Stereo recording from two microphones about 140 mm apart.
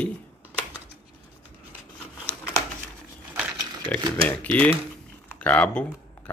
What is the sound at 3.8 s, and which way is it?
Speech, 10° left (ahead or behind).